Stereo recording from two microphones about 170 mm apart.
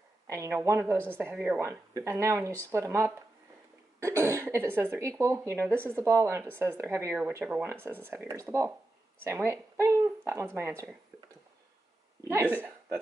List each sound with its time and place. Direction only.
0.3 s speech: 15° right (ahead or behind)
12.2 s speech: 15° right (ahead or behind)